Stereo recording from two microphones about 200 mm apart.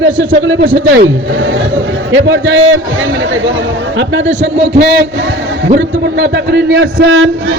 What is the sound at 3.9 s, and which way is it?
Speech, 65° right (ahead or behind).